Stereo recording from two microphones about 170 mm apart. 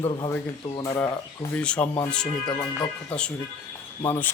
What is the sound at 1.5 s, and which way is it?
Speech, 5° left (ahead or behind).